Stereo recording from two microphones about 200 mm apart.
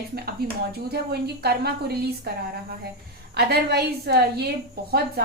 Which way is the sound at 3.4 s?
55° right (ahead or behind).